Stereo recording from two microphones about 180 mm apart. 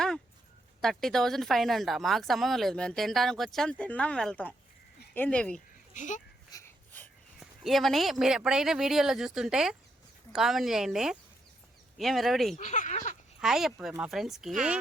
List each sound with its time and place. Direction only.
0.8 s speech: centre (ahead or behind)
5.9 s speech: 45° left (ahead or behind)
6.5 s wheeze: 15° left (ahead or behind)
7.3 s a sound: centre (ahead or behind)
8.2 s speech: 5° right (ahead or behind)
12.5 s speech: 45° left (ahead or behind)
13.4 s speech: centre (ahead or behind)